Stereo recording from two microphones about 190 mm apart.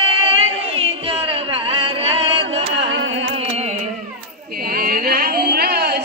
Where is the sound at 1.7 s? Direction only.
30° right (ahead or behind).